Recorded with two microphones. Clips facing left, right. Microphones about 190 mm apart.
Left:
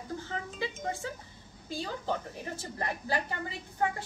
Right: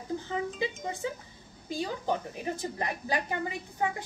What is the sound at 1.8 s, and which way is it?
A woman's voice, 15° right (ahead or behind).